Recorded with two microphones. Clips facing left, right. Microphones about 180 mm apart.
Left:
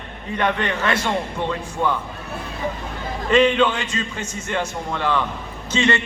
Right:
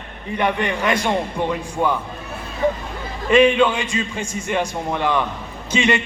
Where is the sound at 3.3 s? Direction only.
10° right (ahead or behind).